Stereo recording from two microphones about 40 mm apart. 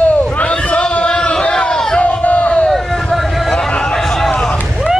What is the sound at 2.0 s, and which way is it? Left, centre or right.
Crowd, left.